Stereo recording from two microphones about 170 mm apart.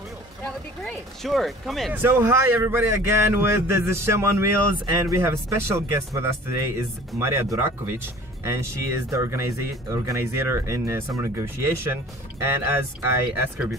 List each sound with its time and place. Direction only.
0.8 s speech: centre (ahead or behind)
2.0 s speech: 15° right (ahead or behind)